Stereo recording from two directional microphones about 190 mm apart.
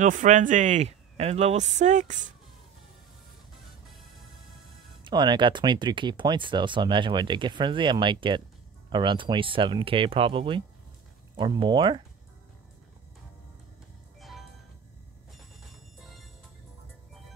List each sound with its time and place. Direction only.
0.0 s speech: 40° right (ahead or behind)
5.0 s speech: 25° right (ahead or behind)